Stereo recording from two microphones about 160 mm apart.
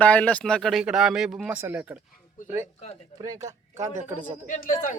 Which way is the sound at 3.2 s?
20° right (ahead or behind).